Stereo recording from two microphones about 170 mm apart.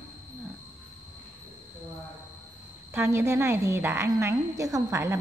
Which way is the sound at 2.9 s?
15° right (ahead or behind).